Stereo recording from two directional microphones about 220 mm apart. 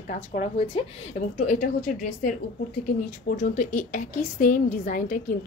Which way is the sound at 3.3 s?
35° left (ahead or behind).